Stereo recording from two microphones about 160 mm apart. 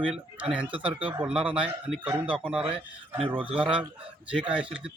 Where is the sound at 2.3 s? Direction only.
5° right (ahead or behind).